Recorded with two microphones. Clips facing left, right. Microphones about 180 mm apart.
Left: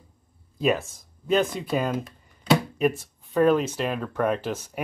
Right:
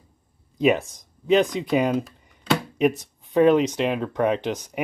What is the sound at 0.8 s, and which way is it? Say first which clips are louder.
Speech: right 5 dB; 15° right (ahead or behind).